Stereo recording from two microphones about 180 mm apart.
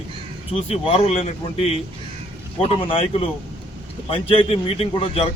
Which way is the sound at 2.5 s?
30° left (ahead or behind).